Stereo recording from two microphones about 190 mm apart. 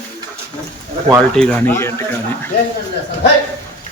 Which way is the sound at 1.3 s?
10° left (ahead or behind).